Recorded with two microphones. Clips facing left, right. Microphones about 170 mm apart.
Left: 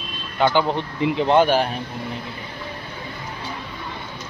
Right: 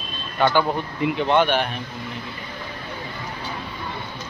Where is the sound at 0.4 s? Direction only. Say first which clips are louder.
Left 1 dB; 15° left (ahead or behind).